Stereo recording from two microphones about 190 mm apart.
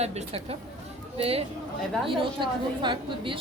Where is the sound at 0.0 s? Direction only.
35° right (ahead or behind).